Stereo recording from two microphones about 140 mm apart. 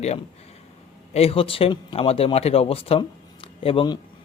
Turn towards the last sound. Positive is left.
turn(degrees=40)  # may be behind; listen again after turning